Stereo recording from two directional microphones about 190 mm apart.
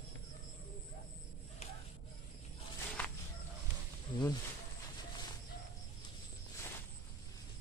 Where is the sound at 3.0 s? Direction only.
10° left (ahead or behind).